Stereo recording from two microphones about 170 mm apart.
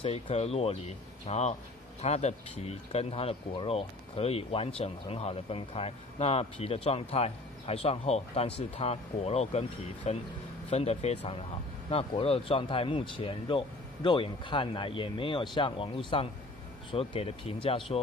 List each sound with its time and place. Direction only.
0.0 s speech: 35° left (ahead or behind)